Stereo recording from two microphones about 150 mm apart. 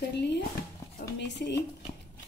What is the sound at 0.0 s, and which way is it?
Speech, 90° left.